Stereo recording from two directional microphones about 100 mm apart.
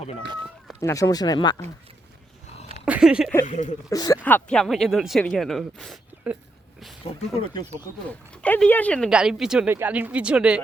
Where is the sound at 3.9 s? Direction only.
40° left (ahead or behind).